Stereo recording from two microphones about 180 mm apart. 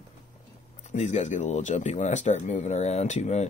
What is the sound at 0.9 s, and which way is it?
Speech, 40° left (ahead or behind).